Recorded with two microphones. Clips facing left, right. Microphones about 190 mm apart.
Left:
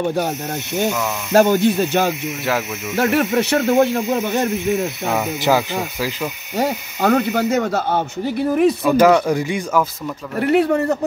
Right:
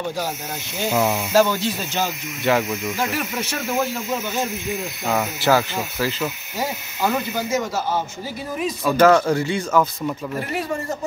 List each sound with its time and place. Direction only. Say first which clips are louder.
0.0 s speech: left 6 dB; 60° left (ahead or behind)
1.3 s speech: left 7 dB; 55° left (ahead or behind)
2.4 s speech: right 3 dB; centre (ahead or behind)
3.0 s speech: left 8 dB; 65° left (ahead or behind)
5.4 s speech: left 1 dB; 15° left (ahead or behind)
6.5 s speech: left 6 dB; 60° left (ahead or behind)
8.9 s speech: right 2 dB; 10° left (ahead or behind)
10.4 s speech: left 15 dB; 65° left (ahead or behind)